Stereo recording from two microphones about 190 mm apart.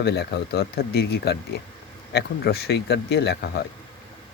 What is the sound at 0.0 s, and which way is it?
Speech, 60° left (ahead or behind).